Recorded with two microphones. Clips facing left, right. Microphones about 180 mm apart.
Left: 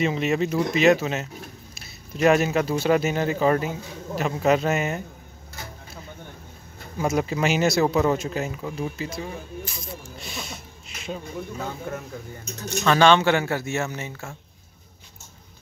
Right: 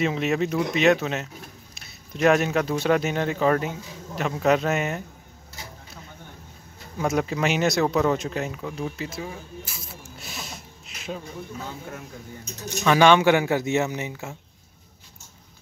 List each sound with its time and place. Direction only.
0.0 s speech: centre (ahead or behind)
7.0 s speech: centre (ahead or behind)
12.6 s speech: 15° right (ahead or behind)